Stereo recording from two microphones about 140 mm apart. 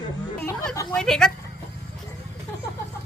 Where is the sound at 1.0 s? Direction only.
5° left (ahead or behind).